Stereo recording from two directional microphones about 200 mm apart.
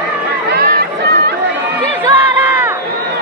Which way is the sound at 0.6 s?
50° right (ahead or behind).